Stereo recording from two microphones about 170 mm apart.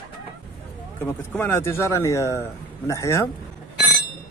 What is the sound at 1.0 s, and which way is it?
Speech, 15° left (ahead or behind).